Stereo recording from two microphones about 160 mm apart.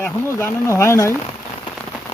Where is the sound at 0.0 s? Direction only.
15° left (ahead or behind).